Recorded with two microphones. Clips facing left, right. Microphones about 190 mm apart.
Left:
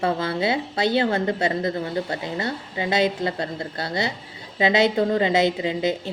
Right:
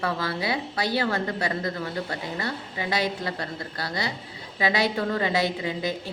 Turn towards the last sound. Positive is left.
turn(degrees=20)  # may be behind; listen again after turning